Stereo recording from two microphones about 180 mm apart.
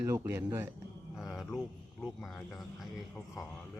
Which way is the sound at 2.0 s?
Centre (ahead or behind).